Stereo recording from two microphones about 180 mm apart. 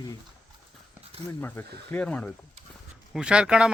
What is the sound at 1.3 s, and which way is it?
Speech, 10° left (ahead or behind).